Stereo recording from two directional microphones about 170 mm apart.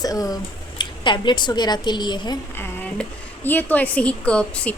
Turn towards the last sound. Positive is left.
turn(degrees=5)  # may be behind; listen again after turning